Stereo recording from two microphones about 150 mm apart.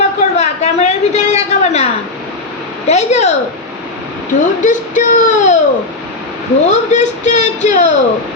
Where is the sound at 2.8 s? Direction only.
50° left (ahead or behind).